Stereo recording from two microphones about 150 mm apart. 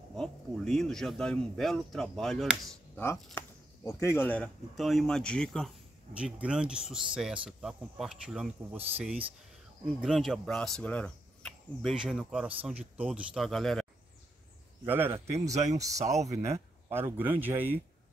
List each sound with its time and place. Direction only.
0.1 s speech: centre (ahead or behind)
3.3 s speech: 20° left (ahead or behind)
4.7 s speech: centre (ahead or behind)
6.1 s speech: 5° right (ahead or behind)
14.9 s speech: 15° right (ahead or behind)
15.5 s speech: 50° right (ahead or behind)
15.8 s speech: 20° right (ahead or behind)